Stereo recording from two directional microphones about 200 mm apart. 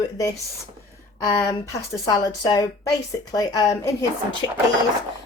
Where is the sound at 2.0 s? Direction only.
20° left (ahead or behind).